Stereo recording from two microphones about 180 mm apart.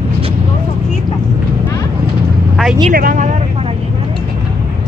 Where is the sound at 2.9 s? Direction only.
50° right (ahead or behind).